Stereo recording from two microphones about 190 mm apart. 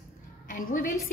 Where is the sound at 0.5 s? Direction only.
45° left (ahead or behind).